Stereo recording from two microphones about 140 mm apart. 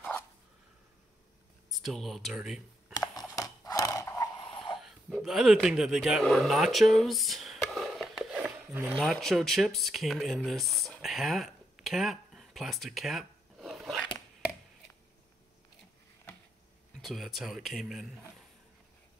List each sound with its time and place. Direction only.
1.7 s speech: centre (ahead or behind)
2.9 s a sound: 25° left (ahead or behind)
4.7 s speech: centre (ahead or behind)
17.0 s speech: centre (ahead or behind)